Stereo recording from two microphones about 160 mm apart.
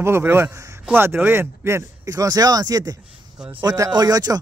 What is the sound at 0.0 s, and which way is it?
Speech, 15° right (ahead or behind).